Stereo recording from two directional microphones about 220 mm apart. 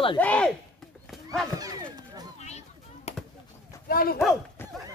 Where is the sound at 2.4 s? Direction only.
30° left (ahead or behind).